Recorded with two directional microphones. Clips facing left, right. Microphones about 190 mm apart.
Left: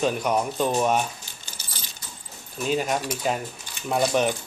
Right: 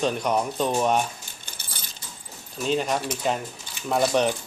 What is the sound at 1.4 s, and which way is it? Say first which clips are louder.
Keys jangling: even; 55° right (ahead or behind).